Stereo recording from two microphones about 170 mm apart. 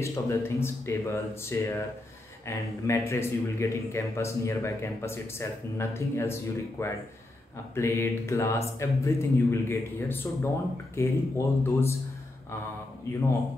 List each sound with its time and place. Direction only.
0.0 s speech: 15° left (ahead or behind)